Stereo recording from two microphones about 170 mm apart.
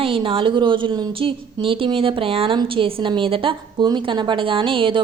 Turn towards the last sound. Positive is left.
turn(degrees=-30)  # may be behind; listen again after turning